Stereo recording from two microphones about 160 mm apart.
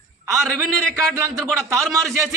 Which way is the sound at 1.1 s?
15° right (ahead or behind).